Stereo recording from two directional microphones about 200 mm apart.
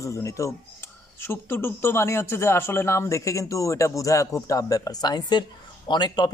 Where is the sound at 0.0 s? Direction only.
15° left (ahead or behind).